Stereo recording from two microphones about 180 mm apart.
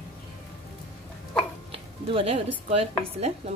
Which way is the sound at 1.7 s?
30° right (ahead or behind).